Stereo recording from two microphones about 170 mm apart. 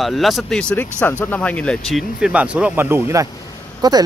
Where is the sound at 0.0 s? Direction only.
Centre (ahead or behind).